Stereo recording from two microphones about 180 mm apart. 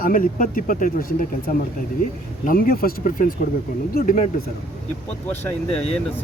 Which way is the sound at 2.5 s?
55° left (ahead or behind).